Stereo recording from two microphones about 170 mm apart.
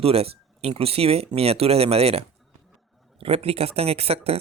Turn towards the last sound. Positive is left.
turn(degrees=-35)  # may be behind; listen again after turning